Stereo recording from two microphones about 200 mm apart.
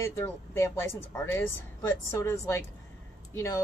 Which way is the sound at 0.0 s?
15° left (ahead or behind).